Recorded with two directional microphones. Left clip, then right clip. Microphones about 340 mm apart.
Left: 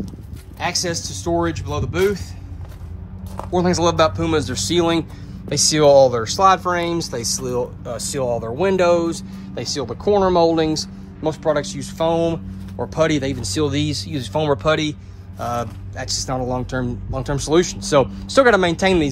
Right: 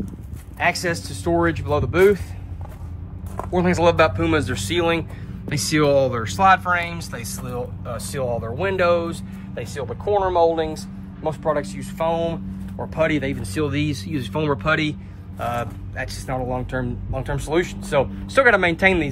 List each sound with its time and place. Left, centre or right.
0.6 s speech: centre
3.5 s speech: centre